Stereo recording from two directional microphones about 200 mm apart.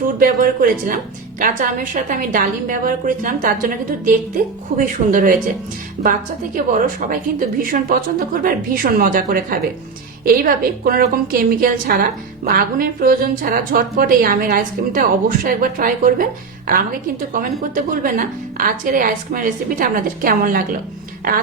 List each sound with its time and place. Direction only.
0.2 s a woman's voice: 45° right (ahead or behind)
6.0 s a woman's voice: 40° right (ahead or behind)
17.3 s a woman's voice: 45° right (ahead or behind)